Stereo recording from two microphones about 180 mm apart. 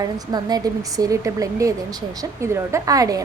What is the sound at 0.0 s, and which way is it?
A woman's voice, 20° right (ahead or behind).